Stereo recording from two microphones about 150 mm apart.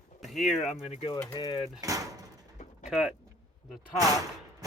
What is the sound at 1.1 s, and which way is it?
Speech, 25° left (ahead or behind).